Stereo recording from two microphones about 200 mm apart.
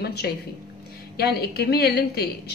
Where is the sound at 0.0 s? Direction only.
55° left (ahead or behind).